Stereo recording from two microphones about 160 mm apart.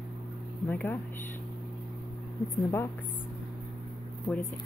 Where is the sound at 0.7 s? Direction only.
10° left (ahead or behind).